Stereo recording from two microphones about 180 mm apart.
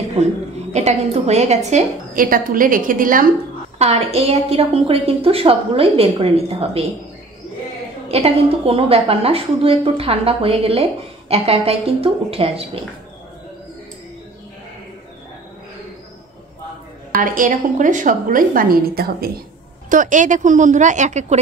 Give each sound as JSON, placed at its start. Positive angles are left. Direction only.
{"t": 0.7, "sound": "a woman's voice", "side_deg": -35}
{"t": 3.7, "sound": "a woman's voice", "side_deg": -35}
{"t": 8.1, "sound": "a woman's voice", "side_deg": -35}
{"t": 17.1, "sound": "a woman's voice", "side_deg": -50}
{"t": 19.9, "sound": "a woman's voice", "side_deg": -45}